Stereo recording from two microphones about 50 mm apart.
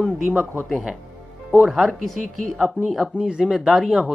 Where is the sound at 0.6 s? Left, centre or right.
Centre.